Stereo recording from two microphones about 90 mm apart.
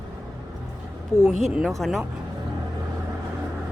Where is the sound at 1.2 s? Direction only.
Centre (ahead or behind).